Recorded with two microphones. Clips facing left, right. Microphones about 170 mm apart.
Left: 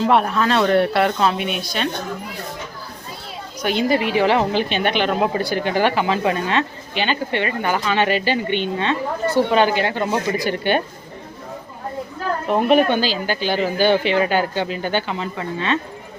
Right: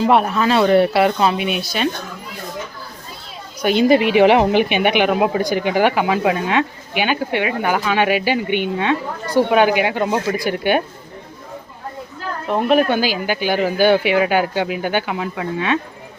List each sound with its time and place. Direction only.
0.0 s speech: 5° right (ahead or behind)
3.6 s speech: 15° right (ahead or behind)
12.5 s speech: centre (ahead or behind)
13.0 s speech: 10° right (ahead or behind)